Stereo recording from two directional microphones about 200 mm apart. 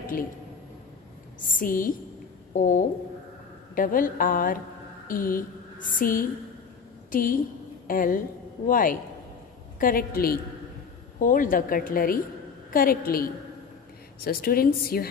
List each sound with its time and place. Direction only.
1.5 s a woman's voice: 45° left (ahead or behind)